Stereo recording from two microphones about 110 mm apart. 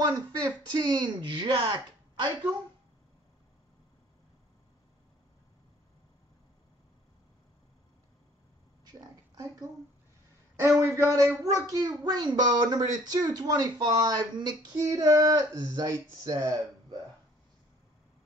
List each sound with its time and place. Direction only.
0.4 s speech: 40° right (ahead or behind)
9.3 s oink: 35° right (ahead or behind)
10.5 s a child's voice: 25° right (ahead or behind)
14.8 s a child's voice: 30° right (ahead or behind)